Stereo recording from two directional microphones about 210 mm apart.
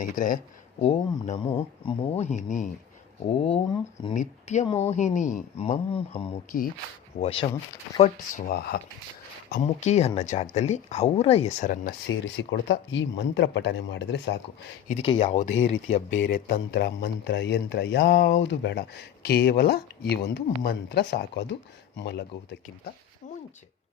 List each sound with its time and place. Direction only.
0.0 s speech: 40° left (ahead or behind)
1.5 s speech: 20° left (ahead or behind)
4.1 s speech: 35° left (ahead or behind)
9.6 s speech: 35° left (ahead or behind)
12.0 s speech: 65° left (ahead or behind)
15.0 s speech: 25° left (ahead or behind)
16.1 s speech: 50° left (ahead or behind)
23.2 s a sound: 35° left (ahead or behind)